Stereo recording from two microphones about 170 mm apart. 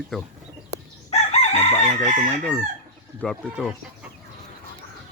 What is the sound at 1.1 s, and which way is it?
Chicken, 40° left (ahead or behind).